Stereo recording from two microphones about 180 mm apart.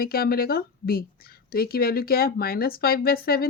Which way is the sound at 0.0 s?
55° left (ahead or behind).